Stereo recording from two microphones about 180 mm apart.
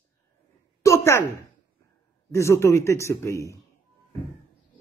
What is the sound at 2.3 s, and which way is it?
Speech, 15° left (ahead or behind).